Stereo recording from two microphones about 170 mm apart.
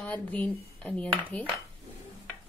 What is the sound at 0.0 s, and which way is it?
Speech, 10° left (ahead or behind).